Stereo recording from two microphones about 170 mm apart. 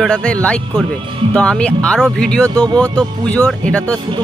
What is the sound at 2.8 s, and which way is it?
Speech, 5° left (ahead or behind).